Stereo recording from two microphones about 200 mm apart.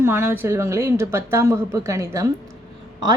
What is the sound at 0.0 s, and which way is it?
A woman's voice, 10° right (ahead or behind).